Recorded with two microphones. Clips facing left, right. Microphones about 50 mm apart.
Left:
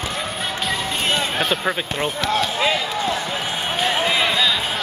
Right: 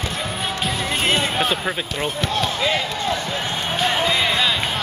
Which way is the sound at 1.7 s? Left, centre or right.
Centre.